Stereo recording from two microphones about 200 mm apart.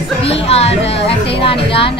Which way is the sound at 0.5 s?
30° left (ahead or behind).